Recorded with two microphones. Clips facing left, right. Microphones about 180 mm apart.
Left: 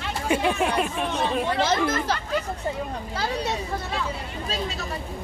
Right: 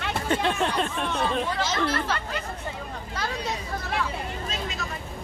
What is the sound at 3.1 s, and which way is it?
Speech, 30° left (ahead or behind).